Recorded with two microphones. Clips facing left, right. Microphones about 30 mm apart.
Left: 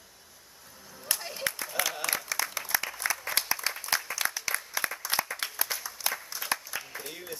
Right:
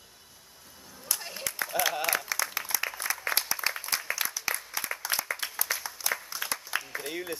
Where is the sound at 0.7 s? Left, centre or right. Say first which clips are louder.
Left 1 dB; centre.